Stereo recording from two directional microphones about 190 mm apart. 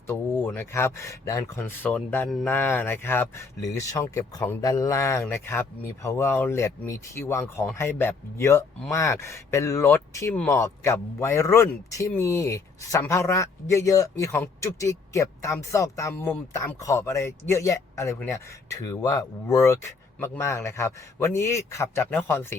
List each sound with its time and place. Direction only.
0.1 s speech: 10° left (ahead or behind)